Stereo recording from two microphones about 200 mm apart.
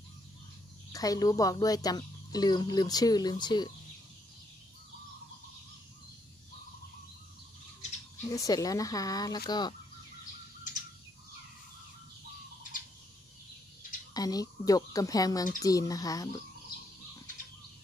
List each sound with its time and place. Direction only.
0.9 s speech: 15° left (ahead or behind)
8.2 s speech: 15° left (ahead or behind)
14.1 s speech: 20° left (ahead or behind)